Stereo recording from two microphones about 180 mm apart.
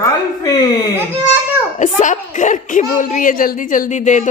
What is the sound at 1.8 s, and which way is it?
Speech, 45° left (ahead or behind).